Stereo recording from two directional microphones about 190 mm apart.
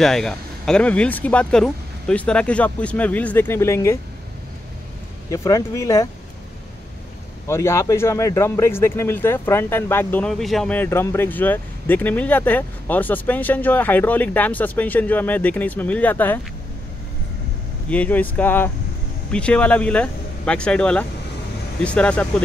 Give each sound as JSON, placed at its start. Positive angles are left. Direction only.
{"t": 0.0, "sound": "speech", "side_deg": 0}
{"t": 5.3, "sound": "speech", "side_deg": 15}
{"t": 7.4, "sound": "speech", "side_deg": 15}
{"t": 17.8, "sound": "speech", "side_deg": 10}